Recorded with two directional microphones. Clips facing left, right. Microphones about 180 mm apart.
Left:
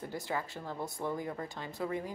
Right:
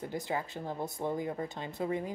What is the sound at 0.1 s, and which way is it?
Speech, 20° right (ahead or behind).